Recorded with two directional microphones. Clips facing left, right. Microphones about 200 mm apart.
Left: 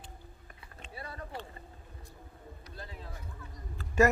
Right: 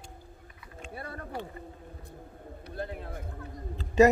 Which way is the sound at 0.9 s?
55° right (ahead or behind).